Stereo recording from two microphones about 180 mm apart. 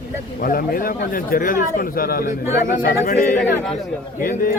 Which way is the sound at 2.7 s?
45° left (ahead or behind).